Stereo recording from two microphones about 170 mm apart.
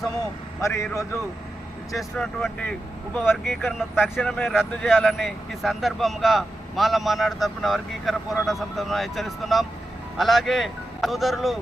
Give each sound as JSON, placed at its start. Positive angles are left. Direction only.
{"t": 0.6, "sound": "a man's voice", "side_deg": 20}
{"t": 1.9, "sound": "speech", "side_deg": 0}